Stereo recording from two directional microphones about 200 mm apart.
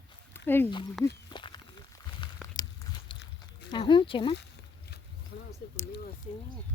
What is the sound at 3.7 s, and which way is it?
Speech, 25° left (ahead or behind).